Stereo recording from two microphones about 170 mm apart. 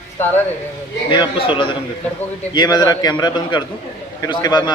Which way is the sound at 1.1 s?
30° left (ahead or behind).